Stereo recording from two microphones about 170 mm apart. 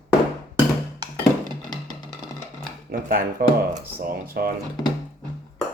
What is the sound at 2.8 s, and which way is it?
Speech, 60° right (ahead or behind).